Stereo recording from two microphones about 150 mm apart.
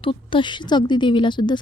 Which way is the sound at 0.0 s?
35° left (ahead or behind).